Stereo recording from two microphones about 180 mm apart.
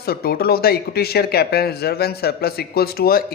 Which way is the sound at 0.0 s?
60° left (ahead or behind).